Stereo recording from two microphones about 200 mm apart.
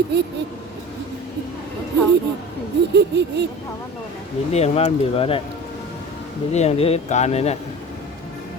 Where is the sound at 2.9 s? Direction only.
55° right (ahead or behind).